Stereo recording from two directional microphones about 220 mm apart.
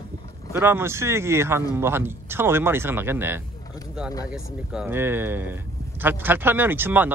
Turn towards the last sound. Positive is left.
turn(degrees=-10)  # may be behind; listen again after turning